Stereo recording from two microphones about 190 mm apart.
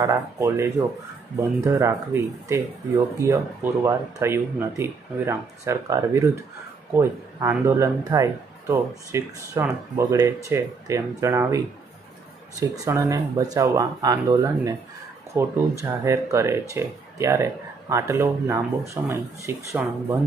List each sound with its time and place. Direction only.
0.0 s speech: 15° right (ahead or behind)